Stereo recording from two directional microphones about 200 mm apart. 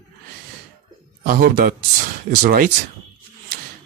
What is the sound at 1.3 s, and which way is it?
Speech, 45° right (ahead or behind).